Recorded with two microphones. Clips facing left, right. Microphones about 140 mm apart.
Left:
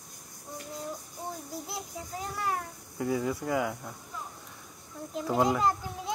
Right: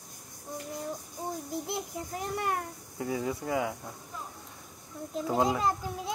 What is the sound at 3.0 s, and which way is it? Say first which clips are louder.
Speech: left 2 dB; 25° right (ahead or behind).